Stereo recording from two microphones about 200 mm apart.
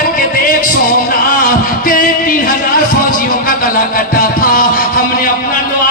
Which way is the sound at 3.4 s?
45° left (ahead or behind).